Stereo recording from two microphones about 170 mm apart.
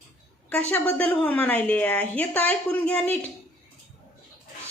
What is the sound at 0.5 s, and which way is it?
A woman's voice, 10° left (ahead or behind).